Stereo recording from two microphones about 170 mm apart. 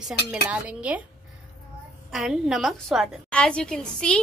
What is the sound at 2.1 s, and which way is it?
A woman's voice, centre (ahead or behind).